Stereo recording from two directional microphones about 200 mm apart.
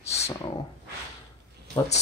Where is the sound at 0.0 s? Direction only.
30° left (ahead or behind).